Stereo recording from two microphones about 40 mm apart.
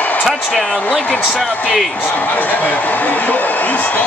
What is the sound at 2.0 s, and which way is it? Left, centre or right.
Speech, left.